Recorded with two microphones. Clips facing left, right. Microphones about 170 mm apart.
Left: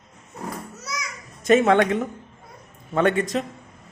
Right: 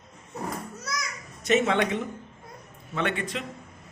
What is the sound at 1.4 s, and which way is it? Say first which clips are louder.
Speech: left 6 dB; 50° left (ahead or behind).